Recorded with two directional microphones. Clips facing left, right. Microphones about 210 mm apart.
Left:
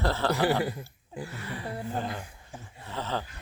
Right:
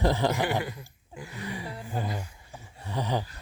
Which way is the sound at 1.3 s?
15° right (ahead or behind).